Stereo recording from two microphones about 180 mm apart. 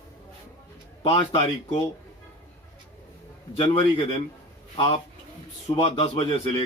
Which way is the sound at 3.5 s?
30° left (ahead or behind).